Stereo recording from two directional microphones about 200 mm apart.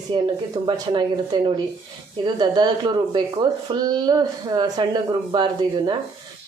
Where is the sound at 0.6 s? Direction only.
25° right (ahead or behind).